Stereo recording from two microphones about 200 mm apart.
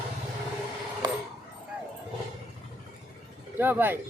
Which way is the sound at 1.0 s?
20° right (ahead or behind).